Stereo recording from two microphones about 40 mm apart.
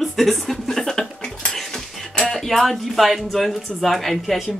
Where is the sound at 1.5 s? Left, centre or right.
Centre.